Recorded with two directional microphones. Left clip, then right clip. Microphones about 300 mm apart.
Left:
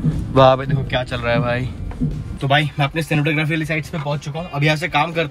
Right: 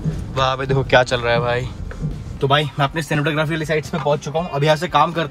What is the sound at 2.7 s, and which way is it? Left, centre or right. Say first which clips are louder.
Speech: right 1 dB; centre.